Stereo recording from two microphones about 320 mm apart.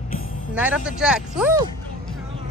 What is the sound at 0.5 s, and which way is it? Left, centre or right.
Speech, centre.